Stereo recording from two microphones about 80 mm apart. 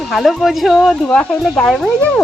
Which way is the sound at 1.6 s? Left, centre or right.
Centre.